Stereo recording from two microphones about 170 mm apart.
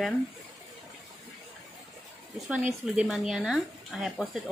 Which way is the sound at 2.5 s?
5° right (ahead or behind).